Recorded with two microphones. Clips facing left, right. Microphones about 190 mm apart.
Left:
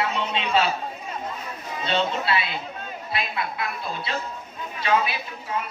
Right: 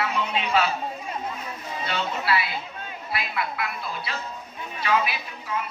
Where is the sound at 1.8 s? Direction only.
25° left (ahead or behind).